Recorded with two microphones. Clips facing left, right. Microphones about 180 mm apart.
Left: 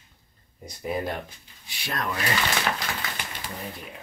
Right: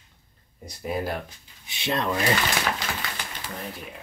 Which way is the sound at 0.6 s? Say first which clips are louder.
Even; centre (ahead or behind).